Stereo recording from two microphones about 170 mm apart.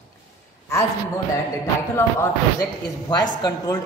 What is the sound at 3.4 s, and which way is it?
Speech, 20° left (ahead or behind).